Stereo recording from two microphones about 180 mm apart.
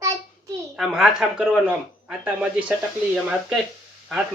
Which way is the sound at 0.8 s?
Centre (ahead or behind).